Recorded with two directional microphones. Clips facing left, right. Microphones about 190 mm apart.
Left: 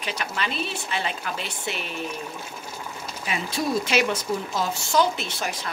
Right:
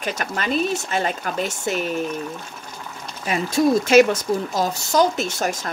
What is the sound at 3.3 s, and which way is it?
Speech, 45° right (ahead or behind).